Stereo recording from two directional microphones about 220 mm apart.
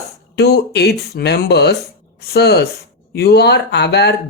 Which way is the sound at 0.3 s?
50° left (ahead or behind).